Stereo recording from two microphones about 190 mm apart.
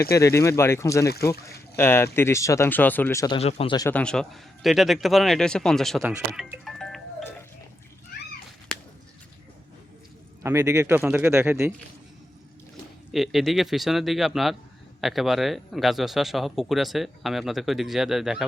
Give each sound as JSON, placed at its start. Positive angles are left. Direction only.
{"t": 0.1, "sound": "speech", "side_deg": 15}
{"t": 3.3, "sound": "speech", "side_deg": 30}
{"t": 3.8, "sound": "speech", "side_deg": 5}
{"t": 6.0, "sound": "music", "side_deg": -5}
{"t": 10.4, "sound": "speech", "side_deg": -15}
{"t": 13.1, "sound": "speech", "side_deg": 0}